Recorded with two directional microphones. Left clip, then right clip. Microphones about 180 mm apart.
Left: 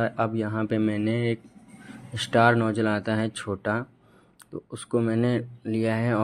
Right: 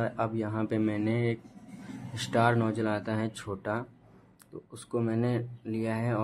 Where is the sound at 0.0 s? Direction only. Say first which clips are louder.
Left 5 dB; 15° left (ahead or behind).